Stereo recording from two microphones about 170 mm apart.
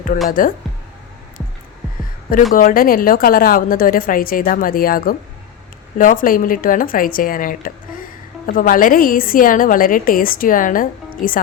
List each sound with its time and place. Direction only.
0.3 s speech: 55° left (ahead or behind)
2.5 s a woman's voice: 55° left (ahead or behind)